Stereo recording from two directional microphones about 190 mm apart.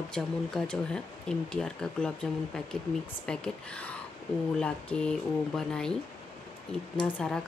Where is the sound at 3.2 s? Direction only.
5° left (ahead or behind).